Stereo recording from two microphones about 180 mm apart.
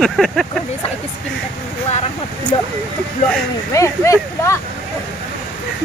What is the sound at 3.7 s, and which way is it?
Speech, 15° left (ahead or behind).